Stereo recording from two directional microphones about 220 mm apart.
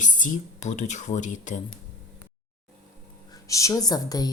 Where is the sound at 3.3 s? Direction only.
15° left (ahead or behind).